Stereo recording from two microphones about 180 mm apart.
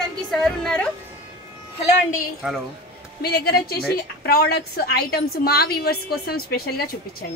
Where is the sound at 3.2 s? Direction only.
60° left (ahead or behind).